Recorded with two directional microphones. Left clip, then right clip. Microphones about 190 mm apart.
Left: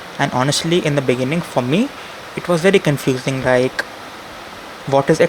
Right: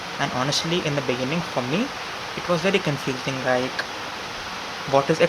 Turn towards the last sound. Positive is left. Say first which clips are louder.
# left 5 dB
turn(degrees=40)  # may be behind; listen again after turning